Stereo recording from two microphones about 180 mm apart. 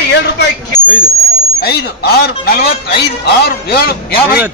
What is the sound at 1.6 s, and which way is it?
Speech, 60° left (ahead or behind).